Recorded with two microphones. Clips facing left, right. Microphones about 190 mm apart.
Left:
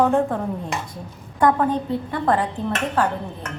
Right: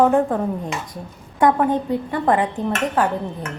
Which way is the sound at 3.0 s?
15° right (ahead or behind).